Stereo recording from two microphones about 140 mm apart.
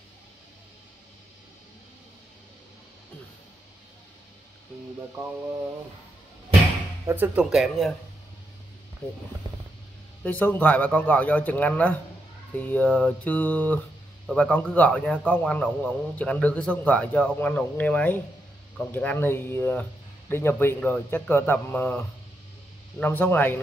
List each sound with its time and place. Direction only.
7.1 s speech: 15° right (ahead or behind)
7.4 s speech: 5° right (ahead or behind)
10.2 s a man's voice: 15° left (ahead or behind)